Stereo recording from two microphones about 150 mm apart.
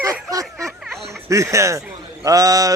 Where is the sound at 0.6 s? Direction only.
Centre (ahead or behind).